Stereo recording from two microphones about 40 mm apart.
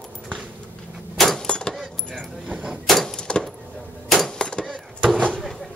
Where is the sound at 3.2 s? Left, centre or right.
Left.